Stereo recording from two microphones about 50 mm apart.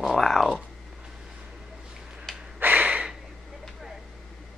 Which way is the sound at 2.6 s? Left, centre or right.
Right.